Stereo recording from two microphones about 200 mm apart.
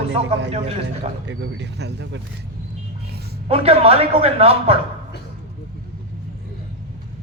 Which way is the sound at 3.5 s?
30° right (ahead or behind).